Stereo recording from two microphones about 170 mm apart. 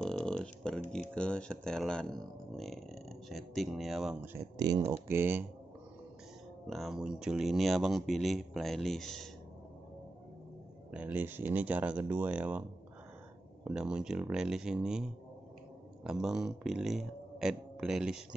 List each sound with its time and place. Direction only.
0.0 s a sound: 5° left (ahead or behind)
1.1 s speech: 5° left (ahead or behind)
4.6 s speech: 25° right (ahead or behind)
6.7 s speech: centre (ahead or behind)
10.9 s speech: 10° right (ahead or behind)
13.7 s speech: 5° right (ahead or behind)